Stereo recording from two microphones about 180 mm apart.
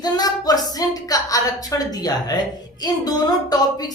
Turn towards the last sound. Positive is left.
turn(degrees=20)  # may be behind; listen again after turning